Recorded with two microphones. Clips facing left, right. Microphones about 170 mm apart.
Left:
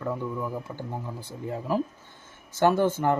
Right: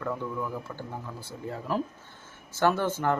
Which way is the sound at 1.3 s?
15° left (ahead or behind).